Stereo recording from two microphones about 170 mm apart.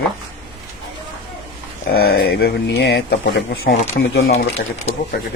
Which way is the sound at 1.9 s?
65° left (ahead or behind).